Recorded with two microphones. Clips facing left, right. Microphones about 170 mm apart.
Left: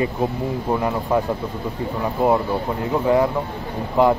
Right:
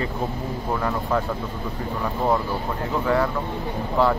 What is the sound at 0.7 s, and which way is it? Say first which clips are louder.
Speech: left 3 dB; 20° left (ahead or behind).